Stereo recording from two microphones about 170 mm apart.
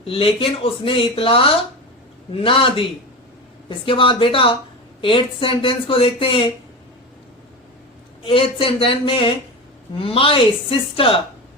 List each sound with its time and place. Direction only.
0.0 s speech: 35° left (ahead or behind)
8.2 s speech: 30° left (ahead or behind)